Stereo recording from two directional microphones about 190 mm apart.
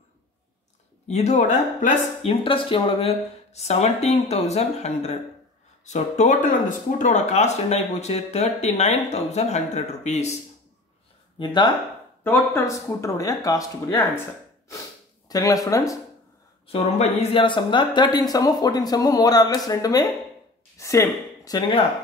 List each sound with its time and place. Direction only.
1.0 s speech: 35° left (ahead or behind)
2.2 s speech: 25° left (ahead or behind)
11.3 s a woman's voice: 25° left (ahead or behind)
12.2 s speech: 10° left (ahead or behind)
15.2 s speech: 20° left (ahead or behind)
16.6 s a woman's voice: 30° left (ahead or behind)